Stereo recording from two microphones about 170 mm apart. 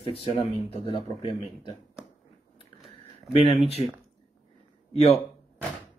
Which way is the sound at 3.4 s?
35° left (ahead or behind).